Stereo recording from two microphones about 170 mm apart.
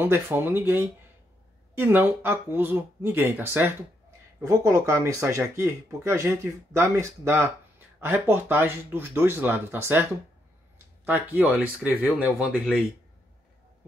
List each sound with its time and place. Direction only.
0.0 s speech: 15° right (ahead or behind)
11.1 s speech: 10° right (ahead or behind)